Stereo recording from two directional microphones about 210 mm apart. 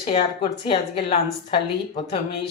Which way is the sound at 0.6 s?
25° left (ahead or behind).